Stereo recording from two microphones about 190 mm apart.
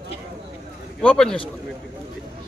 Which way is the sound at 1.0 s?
5° left (ahead or behind).